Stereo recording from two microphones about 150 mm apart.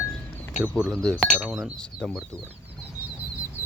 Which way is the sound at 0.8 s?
Centre (ahead or behind).